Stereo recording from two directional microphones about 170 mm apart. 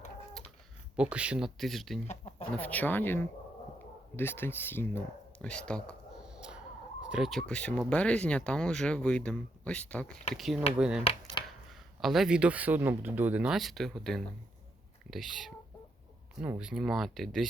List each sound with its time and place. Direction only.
0.9 s speech: 5° right (ahead or behind)
6.2 s a sound: 5° right (ahead or behind)
7.1 s speech: centre (ahead or behind)
11.4 s chopping: 25° left (ahead or behind)
11.7 s speech: centre (ahead or behind)